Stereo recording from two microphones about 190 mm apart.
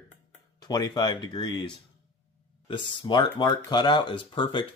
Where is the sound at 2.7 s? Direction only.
25° left (ahead or behind).